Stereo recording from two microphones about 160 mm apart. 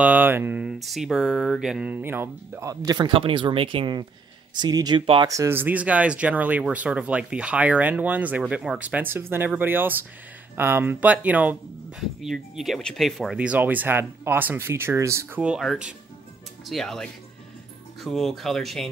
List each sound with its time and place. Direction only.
0.0 s speech: 10° right (ahead or behind); by 5.3 s 35° right (ahead or behind)
5.3 s speech: 15° right (ahead or behind); by 18.9 s centre (ahead or behind)